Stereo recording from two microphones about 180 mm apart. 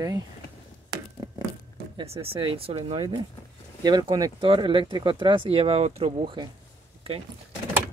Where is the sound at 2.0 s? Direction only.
30° right (ahead or behind).